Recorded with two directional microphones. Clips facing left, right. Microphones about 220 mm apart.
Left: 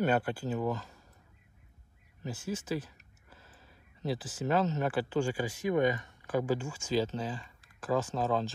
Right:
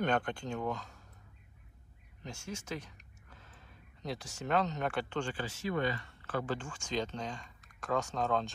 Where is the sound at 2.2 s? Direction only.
5° left (ahead or behind).